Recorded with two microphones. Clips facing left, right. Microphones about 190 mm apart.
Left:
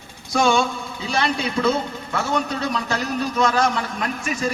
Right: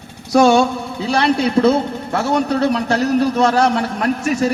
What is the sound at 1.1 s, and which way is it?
Speech, 70° right (ahead or behind).